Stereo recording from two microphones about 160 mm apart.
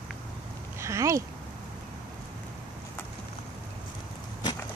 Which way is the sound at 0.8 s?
20° right (ahead or behind).